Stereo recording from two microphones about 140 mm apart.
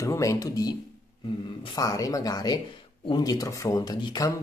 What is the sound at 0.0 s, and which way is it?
Speech, 20° left (ahead or behind).